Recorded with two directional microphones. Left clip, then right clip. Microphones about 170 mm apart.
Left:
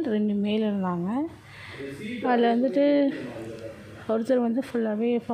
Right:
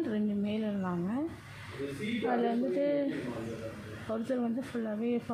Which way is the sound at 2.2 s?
45° left (ahead or behind).